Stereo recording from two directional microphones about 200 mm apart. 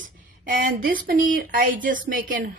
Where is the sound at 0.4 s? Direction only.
45° right (ahead or behind).